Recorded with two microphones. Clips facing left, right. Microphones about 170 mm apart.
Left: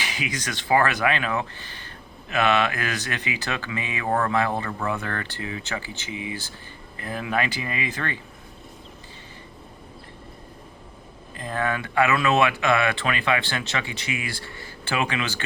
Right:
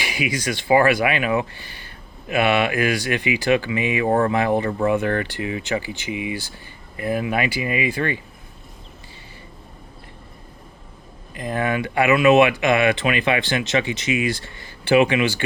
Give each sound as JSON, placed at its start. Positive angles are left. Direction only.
{"t": 0.0, "sound": "speech", "side_deg": -10}
{"t": 11.3, "sound": "speech", "side_deg": -15}